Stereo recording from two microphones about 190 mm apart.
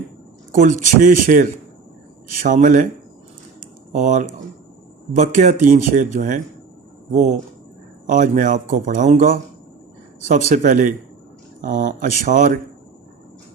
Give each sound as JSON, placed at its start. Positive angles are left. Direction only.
{"t": 0.5, "sound": "speech", "side_deg": -40}
{"t": 3.9, "sound": "speech", "side_deg": -40}
{"t": 10.5, "sound": "speech", "side_deg": -40}